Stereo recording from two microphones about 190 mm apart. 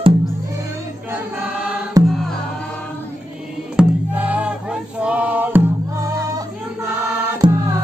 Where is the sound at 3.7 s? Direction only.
5° right (ahead or behind).